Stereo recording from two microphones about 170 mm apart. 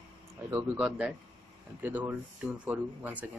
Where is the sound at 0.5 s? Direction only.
15° right (ahead or behind).